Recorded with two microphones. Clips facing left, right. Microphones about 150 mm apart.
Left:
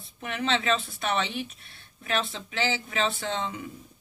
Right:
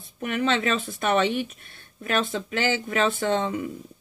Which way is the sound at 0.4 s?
45° right (ahead or behind).